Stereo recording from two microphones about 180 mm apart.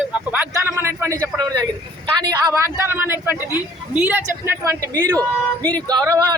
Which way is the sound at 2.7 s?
15° right (ahead or behind).